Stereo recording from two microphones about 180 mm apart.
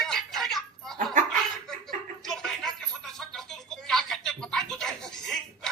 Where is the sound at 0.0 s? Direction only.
Centre (ahead or behind).